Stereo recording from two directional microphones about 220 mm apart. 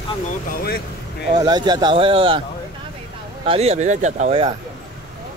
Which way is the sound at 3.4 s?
25° right (ahead or behind).